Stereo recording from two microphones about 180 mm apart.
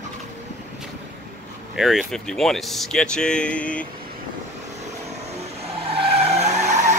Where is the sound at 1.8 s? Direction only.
Centre (ahead or behind).